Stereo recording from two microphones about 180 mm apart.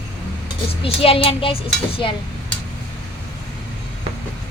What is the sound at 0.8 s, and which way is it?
Speech, 30° left (ahead or behind).